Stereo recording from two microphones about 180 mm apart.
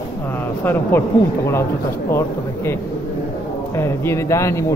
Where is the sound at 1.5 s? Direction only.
15° left (ahead or behind).